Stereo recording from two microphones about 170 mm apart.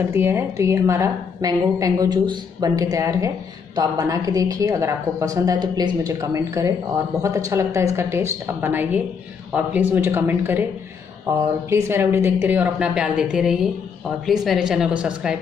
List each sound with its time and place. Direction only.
0.1 s a woman's voice: 15° right (ahead or behind)